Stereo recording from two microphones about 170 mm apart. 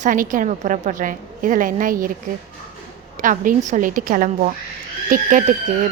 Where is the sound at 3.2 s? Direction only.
50° right (ahead or behind).